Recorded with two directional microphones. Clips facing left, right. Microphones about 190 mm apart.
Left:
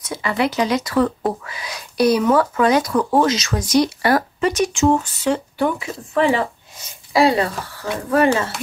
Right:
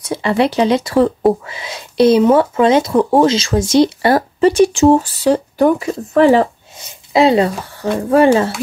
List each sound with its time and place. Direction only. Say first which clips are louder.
0.0 s speech: right 6 dB; 30° right (ahead or behind)
7.1 s speech: right 5 dB; 20° right (ahead or behind)